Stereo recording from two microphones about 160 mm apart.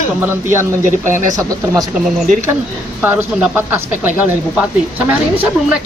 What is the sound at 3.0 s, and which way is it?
Speech, 10° right (ahead or behind).